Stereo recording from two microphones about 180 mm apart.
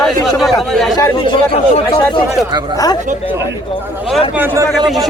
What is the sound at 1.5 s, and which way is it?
Speech, 30° left (ahead or behind).